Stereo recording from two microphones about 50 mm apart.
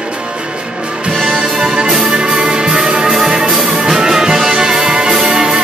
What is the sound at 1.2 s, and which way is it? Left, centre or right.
Music, centre.